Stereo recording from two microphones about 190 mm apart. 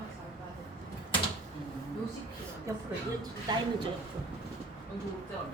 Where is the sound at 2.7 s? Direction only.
15° right (ahead or behind).